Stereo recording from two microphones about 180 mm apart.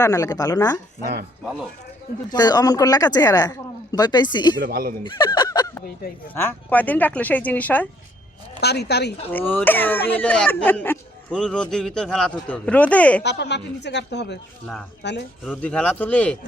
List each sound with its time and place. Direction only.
0.0 s speech: 20° left (ahead or behind)
2.3 s speech: 20° left (ahead or behind)
4.6 s speech: 55° right (ahead or behind)
5.0 s honk: 25° left (ahead or behind)
6.3 s speech: 10° left (ahead or behind)
8.6 s a woman's voice: 65° left (ahead or behind)
9.3 s speech: 10° left (ahead or behind)
13.2 s a woman's voice: 70° left (ahead or behind)
15.4 s speech: 5° left (ahead or behind)